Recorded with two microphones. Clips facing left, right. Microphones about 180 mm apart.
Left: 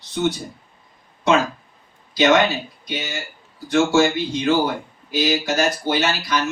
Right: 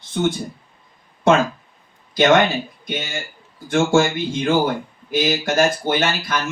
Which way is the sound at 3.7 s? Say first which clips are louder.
Even; 50° right (ahead or behind).